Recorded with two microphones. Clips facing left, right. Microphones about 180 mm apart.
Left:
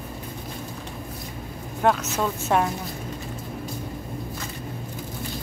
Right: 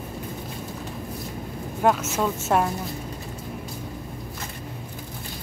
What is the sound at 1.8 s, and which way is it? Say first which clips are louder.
Speech: right 1 dB; 5° right (ahead or behind).